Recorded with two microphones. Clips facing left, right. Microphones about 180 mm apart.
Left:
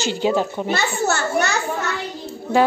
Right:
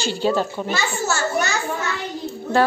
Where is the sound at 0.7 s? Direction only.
60° left (ahead or behind).